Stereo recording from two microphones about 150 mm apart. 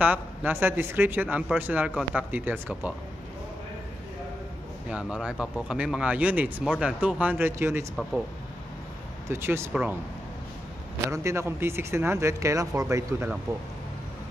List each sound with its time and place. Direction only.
0.0 s a man's voice: 10° right (ahead or behind)
4.9 s a man's voice: 5° right (ahead or behind)
9.3 s a man's voice: 15° right (ahead or behind)
11.1 s a man's voice: 20° right (ahead or behind)